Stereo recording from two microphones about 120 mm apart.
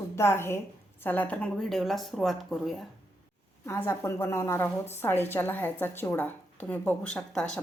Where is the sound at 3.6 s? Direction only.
20° left (ahead or behind).